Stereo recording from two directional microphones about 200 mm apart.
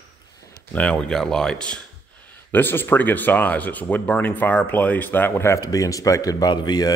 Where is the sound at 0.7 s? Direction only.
5° left (ahead or behind).